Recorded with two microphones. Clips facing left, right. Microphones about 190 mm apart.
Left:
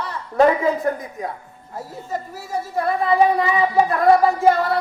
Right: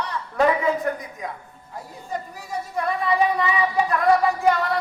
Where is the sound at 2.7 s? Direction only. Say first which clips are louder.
Left 4 dB; 35° left (ahead or behind).